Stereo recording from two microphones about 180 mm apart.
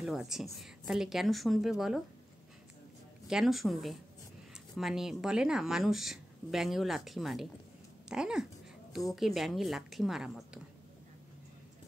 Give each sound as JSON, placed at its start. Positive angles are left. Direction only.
{"t": 0.0, "sound": "speech", "side_deg": 0}
{"t": 3.3, "sound": "speech", "side_deg": 0}